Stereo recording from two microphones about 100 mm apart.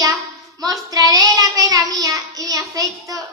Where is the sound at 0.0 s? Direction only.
35° right (ahead or behind).